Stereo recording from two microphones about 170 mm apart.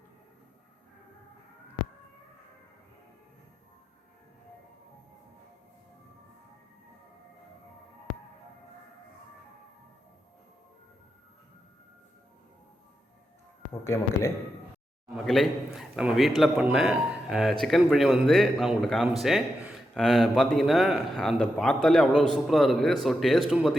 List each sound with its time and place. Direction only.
13.8 s a man's voice: 15° left (ahead or behind)
15.1 s a man's voice: centre (ahead or behind)